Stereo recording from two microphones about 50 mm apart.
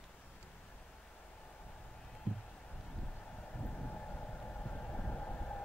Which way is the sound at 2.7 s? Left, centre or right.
Left.